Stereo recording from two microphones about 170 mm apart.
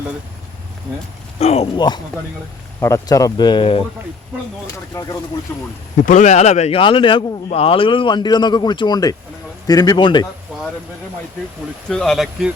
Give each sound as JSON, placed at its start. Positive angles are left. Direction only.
{"t": 1.4, "sound": "speech", "side_deg": 35}
{"t": 4.6, "sound": "speech", "side_deg": 20}
{"t": 6.1, "sound": "speech", "side_deg": 45}
{"t": 11.9, "sound": "speech", "side_deg": 0}